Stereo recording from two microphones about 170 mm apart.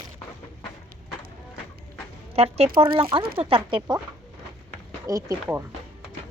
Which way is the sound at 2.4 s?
35° right (ahead or behind).